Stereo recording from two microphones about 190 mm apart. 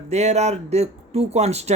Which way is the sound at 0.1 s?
35° right (ahead or behind).